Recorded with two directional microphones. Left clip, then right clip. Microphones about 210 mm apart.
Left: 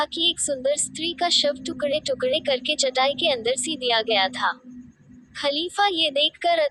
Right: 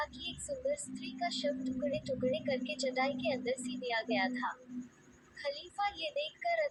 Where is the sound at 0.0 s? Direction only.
50° left (ahead or behind).